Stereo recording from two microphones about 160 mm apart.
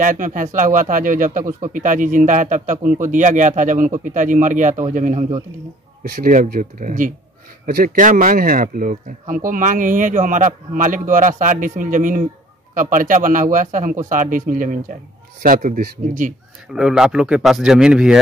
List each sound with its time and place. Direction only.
0.0 s a man's voice: 55° right (ahead or behind)
16.7 s speech: 5° right (ahead or behind)